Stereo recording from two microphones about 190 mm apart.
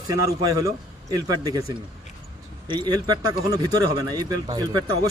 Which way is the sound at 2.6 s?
25° right (ahead or behind).